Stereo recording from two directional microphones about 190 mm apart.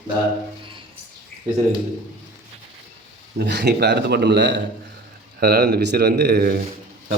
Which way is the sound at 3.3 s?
60° right (ahead or behind).